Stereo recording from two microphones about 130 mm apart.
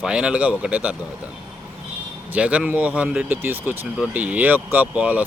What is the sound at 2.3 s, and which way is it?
Speech, 10° right (ahead or behind).